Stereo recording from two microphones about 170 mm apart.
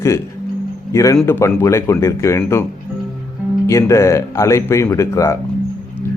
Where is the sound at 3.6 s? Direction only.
15° left (ahead or behind).